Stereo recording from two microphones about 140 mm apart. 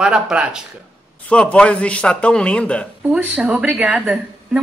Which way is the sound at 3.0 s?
10° right (ahead or behind).